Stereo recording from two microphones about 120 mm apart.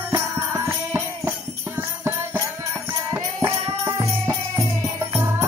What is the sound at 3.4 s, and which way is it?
Music, 25° right (ahead or behind).